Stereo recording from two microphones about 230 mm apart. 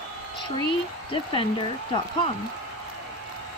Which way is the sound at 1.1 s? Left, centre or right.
Left.